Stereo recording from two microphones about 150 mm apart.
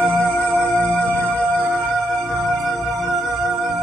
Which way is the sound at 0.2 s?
5° left (ahead or behind).